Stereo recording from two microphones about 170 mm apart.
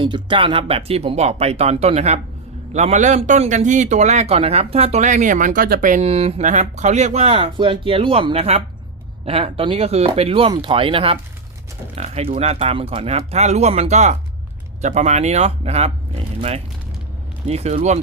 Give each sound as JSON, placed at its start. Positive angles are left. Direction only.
{"t": 0.0, "sound": "speech", "side_deg": -30}
{"t": 17.5, "sound": "speech", "side_deg": -40}